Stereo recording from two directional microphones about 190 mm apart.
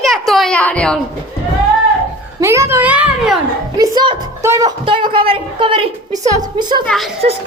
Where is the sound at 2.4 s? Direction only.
15° right (ahead or behind).